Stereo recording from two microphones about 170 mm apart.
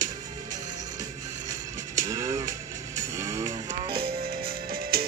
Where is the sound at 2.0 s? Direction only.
20° right (ahead or behind).